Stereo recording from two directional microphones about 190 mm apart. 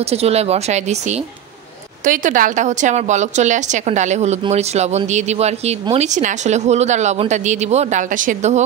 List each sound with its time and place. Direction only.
0.0 s a woman's voice: 35° right (ahead or behind)